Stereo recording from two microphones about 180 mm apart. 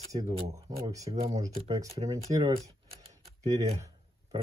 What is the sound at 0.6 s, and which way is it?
Speech, 20° right (ahead or behind).